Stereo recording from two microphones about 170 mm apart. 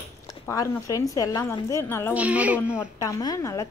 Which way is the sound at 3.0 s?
20° left (ahead or behind).